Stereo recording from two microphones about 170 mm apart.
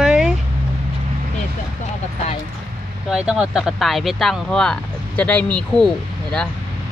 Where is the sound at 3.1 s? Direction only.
5° right (ahead or behind).